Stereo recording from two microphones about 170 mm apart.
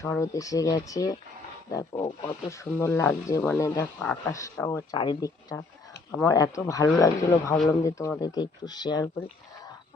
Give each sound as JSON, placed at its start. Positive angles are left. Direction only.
{"t": 0.0, "sound": "speech", "side_deg": 15}